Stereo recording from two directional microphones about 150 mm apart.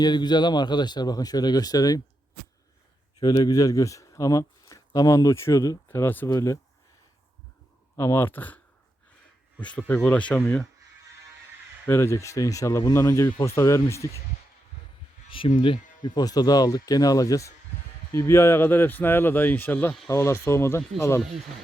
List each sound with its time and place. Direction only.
0.0 s speech: 30° left (ahead or behind)
3.2 s speech: 25° left (ahead or behind)
7.9 s speech: 15° left (ahead or behind)
11.9 s speech: 15° left (ahead or behind)
15.3 s speech: 35° left (ahead or behind); by 21.2 s 20° left (ahead or behind)